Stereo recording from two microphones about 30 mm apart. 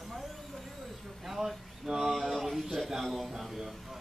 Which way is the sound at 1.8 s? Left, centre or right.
Centre.